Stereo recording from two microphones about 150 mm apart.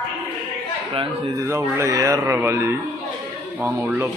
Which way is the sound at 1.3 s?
20° right (ahead or behind).